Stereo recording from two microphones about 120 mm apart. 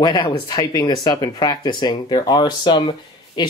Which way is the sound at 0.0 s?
35° left (ahead or behind).